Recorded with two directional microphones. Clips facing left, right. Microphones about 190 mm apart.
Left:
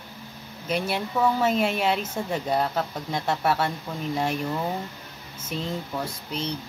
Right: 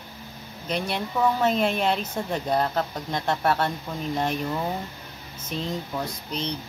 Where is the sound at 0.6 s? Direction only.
5° left (ahead or behind).